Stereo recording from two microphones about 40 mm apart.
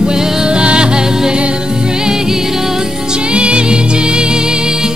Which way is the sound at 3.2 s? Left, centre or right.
Right.